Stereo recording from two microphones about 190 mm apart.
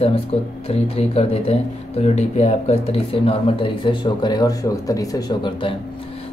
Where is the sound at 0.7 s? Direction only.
30° left (ahead or behind).